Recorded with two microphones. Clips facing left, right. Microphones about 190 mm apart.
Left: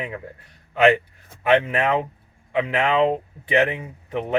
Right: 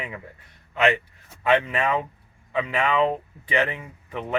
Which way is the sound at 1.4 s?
25° left (ahead or behind).